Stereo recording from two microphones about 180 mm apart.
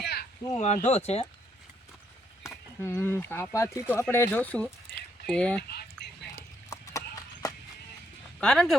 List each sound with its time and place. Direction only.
0.0 s a sound: 65° left (ahead or behind)
0.6 s speech: 40° left (ahead or behind)
2.8 s speech: 15° left (ahead or behind)
4.9 s a sound: 65° left (ahead or behind)
5.2 s speech: 5° left (ahead or behind)
6.3 s horse: 15° left (ahead or behind)
8.4 s speech: 5° left (ahead or behind)